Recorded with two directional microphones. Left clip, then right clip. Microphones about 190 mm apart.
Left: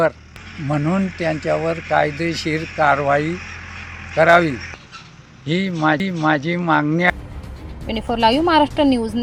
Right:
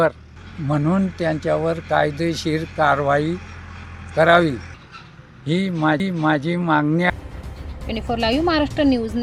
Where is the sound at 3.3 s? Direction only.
70° right (ahead or behind).